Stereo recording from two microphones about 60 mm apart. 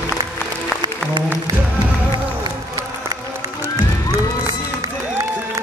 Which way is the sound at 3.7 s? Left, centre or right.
Right.